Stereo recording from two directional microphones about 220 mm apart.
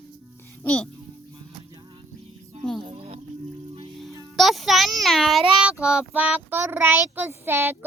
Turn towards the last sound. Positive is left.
turn(degrees=-10)  # may be behind; listen again after turning